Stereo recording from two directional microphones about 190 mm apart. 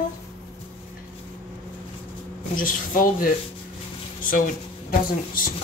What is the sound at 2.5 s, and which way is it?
Speech, 45° left (ahead or behind).